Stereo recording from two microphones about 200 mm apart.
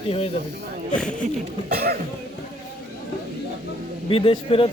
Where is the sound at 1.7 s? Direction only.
50° right (ahead or behind).